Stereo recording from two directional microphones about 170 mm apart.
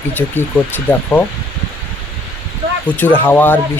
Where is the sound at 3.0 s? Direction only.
10° left (ahead or behind).